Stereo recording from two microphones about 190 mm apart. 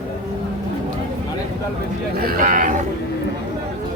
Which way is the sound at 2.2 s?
50° right (ahead or behind).